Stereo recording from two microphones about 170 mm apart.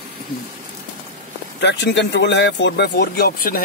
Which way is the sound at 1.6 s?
90° left.